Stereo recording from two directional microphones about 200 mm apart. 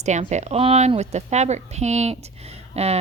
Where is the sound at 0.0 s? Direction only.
35° right (ahead or behind).